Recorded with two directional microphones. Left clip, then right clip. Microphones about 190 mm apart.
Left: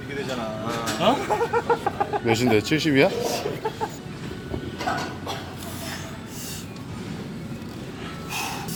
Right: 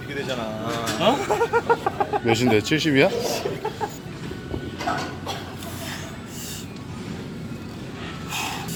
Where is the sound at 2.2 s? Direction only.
5° right (ahead or behind).